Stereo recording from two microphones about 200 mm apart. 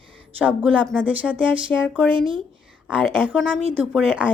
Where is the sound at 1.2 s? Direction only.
5° right (ahead or behind).